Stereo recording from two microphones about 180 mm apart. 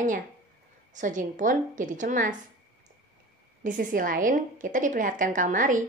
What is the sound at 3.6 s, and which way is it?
A woman's voice, 50° right (ahead or behind).